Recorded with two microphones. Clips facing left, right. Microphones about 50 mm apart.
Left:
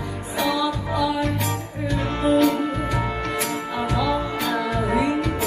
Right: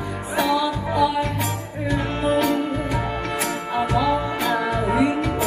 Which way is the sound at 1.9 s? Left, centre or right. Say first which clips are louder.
Left 1 dB; right.